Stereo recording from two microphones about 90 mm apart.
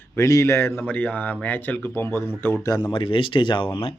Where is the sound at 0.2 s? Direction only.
35° left (ahead or behind).